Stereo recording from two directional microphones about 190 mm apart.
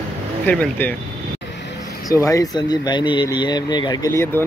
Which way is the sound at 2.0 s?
15° left (ahead or behind).